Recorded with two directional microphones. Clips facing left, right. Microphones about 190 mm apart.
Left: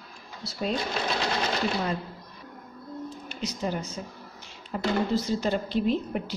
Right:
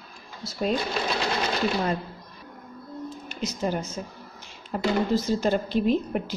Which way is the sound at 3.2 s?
45° right (ahead or behind).